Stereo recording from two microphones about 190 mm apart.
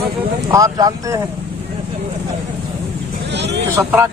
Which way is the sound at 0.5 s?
20° right (ahead or behind).